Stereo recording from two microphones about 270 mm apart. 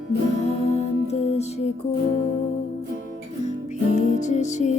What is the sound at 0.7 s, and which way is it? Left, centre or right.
Music, left.